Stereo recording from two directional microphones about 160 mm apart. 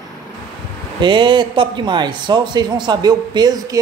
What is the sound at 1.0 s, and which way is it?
Speech, 30° right (ahead or behind).